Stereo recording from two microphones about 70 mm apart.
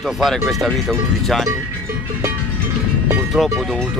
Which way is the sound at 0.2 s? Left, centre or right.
Centre.